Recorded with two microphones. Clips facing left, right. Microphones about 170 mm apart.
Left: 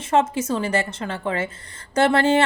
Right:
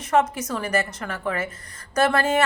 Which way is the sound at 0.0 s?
25° left (ahead or behind).